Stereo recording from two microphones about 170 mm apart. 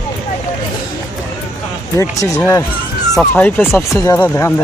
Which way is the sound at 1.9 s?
20° left (ahead or behind).